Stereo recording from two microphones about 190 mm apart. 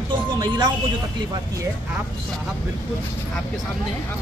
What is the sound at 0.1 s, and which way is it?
Music, 25° right (ahead or behind).